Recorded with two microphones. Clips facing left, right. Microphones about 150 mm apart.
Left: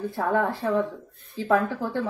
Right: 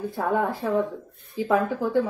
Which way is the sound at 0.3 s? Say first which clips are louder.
Even; 15° right (ahead or behind).